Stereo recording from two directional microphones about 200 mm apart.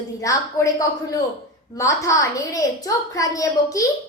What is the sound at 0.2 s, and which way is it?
A woman's voice, 15° left (ahead or behind).